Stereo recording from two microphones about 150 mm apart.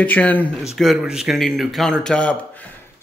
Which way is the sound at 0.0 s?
10° left (ahead or behind).